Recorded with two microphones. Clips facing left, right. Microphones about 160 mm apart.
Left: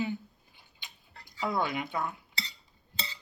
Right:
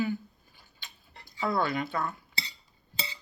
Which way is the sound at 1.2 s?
15° left (ahead or behind).